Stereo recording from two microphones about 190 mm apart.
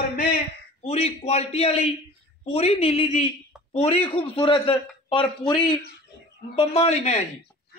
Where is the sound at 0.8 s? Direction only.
35° left (ahead or behind).